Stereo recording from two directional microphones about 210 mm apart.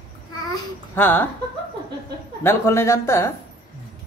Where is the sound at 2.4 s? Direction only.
10° left (ahead or behind).